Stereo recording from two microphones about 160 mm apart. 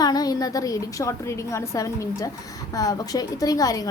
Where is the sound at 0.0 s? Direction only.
25° left (ahead or behind).